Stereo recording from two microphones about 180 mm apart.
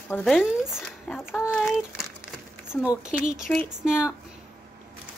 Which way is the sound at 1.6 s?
Centre (ahead or behind).